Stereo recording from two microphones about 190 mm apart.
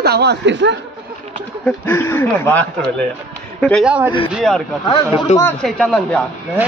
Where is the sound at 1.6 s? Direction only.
10° left (ahead or behind).